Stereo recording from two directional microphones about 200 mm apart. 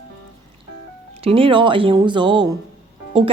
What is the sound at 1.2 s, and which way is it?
A woman's voice, 30° right (ahead or behind).